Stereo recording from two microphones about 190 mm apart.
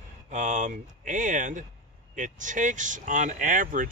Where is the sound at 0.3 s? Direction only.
40° right (ahead or behind).